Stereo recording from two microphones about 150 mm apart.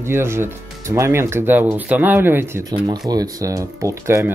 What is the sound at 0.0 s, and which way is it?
Speech, 15° right (ahead or behind).